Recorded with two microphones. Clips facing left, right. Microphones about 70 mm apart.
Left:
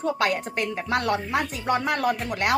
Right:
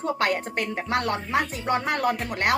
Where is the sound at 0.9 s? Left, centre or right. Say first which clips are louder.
Left 1 dB; right.